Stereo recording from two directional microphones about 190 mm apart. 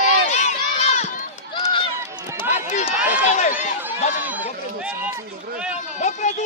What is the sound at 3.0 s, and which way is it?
Run, 10° right (ahead or behind).